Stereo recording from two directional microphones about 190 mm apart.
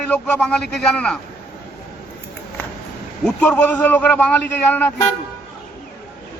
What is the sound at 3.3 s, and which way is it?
Speech, 5° left (ahead or behind).